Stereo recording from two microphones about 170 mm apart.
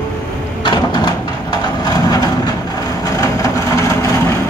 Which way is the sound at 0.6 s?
25° left (ahead or behind).